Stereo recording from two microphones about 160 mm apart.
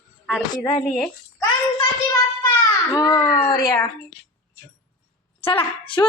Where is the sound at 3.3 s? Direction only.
20° left (ahead or behind).